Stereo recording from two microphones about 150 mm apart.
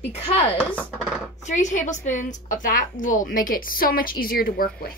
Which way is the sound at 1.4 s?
55° left (ahead or behind).